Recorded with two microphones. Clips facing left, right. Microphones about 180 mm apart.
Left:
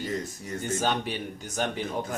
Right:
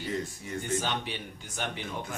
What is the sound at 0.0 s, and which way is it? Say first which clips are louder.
A man's voice: left 2 dB; 45° left (ahead or behind).